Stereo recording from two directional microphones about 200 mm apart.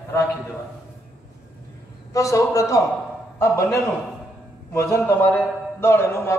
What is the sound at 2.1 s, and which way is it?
A man's voice, 15° left (ahead or behind).